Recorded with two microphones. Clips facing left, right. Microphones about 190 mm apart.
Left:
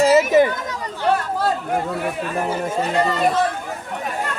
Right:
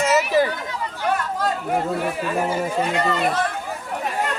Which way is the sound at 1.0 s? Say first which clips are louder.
Left 3 dB; 30° left (ahead or behind).